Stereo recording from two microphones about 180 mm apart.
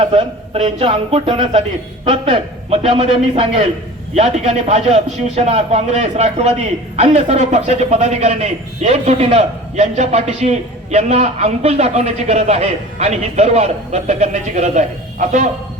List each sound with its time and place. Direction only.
0.0 s a man's voice: 30° right (ahead or behind)